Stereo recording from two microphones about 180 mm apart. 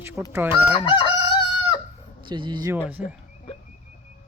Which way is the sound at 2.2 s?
25° right (ahead or behind).